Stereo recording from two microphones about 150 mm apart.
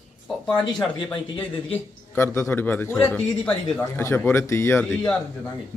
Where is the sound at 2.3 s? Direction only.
15° left (ahead or behind).